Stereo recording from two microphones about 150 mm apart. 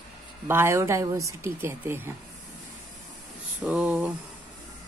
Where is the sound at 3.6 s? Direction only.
10° right (ahead or behind).